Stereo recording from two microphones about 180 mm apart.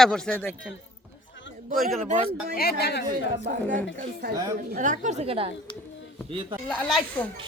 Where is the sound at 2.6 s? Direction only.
60° left (ahead or behind).